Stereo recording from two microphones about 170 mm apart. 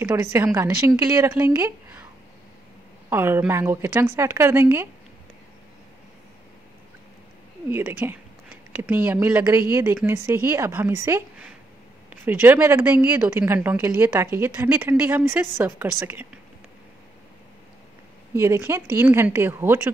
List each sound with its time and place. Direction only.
0.0 s a woman's voice: 15° right (ahead or behind)
3.1 s a woman's voice: 15° right (ahead or behind)
7.7 s a woman's voice: 10° right (ahead or behind)
18.3 s a woman's voice: 15° right (ahead or behind)